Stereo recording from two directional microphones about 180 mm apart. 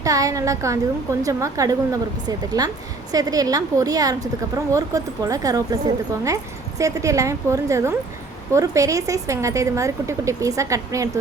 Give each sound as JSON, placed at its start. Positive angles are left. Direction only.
{"t": 0.0, "sound": "a woman's voice", "side_deg": -20}